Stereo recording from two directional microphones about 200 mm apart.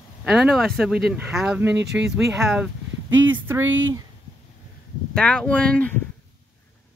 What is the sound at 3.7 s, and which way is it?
Speech, 70° right (ahead or behind).